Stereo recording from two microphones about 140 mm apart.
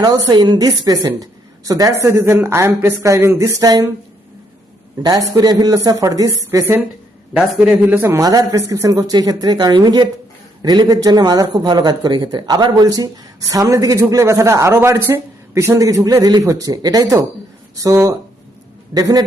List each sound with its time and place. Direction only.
0.0 s a woman's voice: 30° right (ahead or behind)
5.0 s a woman's voice: 25° right (ahead or behind)
7.7 s speech: 5° right (ahead or behind)
7.9 s a woman's voice: 20° right (ahead or behind)